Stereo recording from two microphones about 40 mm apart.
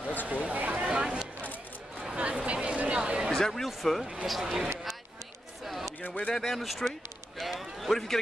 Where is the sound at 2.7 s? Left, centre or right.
Right.